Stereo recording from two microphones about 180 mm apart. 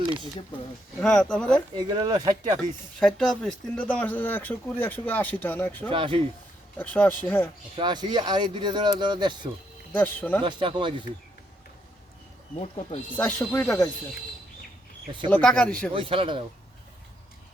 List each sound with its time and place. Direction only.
0.0 s a sound: 25° right (ahead or behind)
0.9 s speech: 5° left (ahead or behind)
1.8 s speech: 25° right (ahead or behind)
2.6 s speech: centre (ahead or behind)
5.9 s speech: 30° right (ahead or behind)
6.7 s speech: 10° left (ahead or behind)
7.8 s speech: 25° right (ahead or behind)
9.9 s speech: 10° left (ahead or behind)
10.4 s speech: 25° right (ahead or behind)
12.5 s speech: 35° left (ahead or behind)
13.1 s speech: 10° left (ahead or behind)
15.3 s speech: 5° left (ahead or behind)
15.9 s speech: 30° right (ahead or behind)